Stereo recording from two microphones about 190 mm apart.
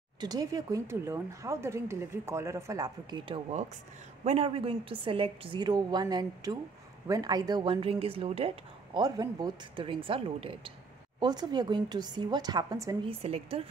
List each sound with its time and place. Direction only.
0.2 s speech: 20° right (ahead or behind)
13.2 s speech: 30° right (ahead or behind)